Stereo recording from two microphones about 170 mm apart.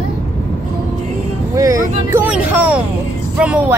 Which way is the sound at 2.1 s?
10° right (ahead or behind).